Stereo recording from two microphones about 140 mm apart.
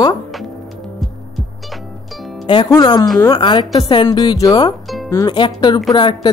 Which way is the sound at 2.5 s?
30° left (ahead or behind).